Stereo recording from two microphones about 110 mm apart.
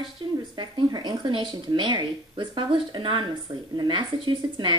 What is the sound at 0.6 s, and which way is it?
A woman's voice, 40° right (ahead or behind).